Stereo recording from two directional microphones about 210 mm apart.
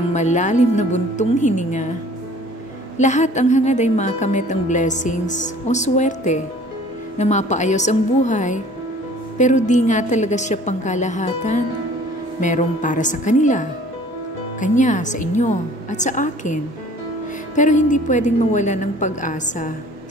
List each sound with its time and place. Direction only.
0.1 s a woman's voice: 35° left (ahead or behind)
3.0 s a woman's voice: 35° left (ahead or behind)
17.6 s a woman's voice: 35° left (ahead or behind)